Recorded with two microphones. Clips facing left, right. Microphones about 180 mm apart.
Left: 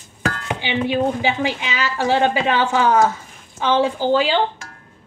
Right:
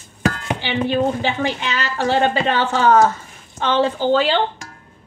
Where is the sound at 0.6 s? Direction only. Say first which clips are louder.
Right 1 dB; 10° left (ahead or behind).